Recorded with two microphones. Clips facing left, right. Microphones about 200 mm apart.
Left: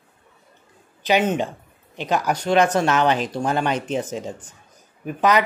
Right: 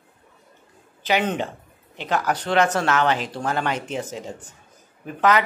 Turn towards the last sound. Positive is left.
turn(degrees=15)  # may be behind; listen again after turning